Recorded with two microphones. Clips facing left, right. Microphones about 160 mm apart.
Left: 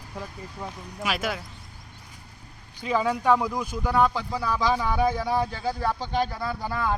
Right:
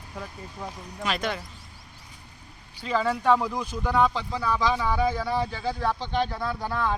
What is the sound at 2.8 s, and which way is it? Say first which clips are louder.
Speech: left 1 dB; 10° left (ahead or behind).